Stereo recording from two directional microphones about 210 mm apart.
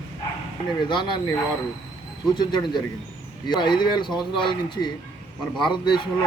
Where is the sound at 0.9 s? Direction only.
20° left (ahead or behind).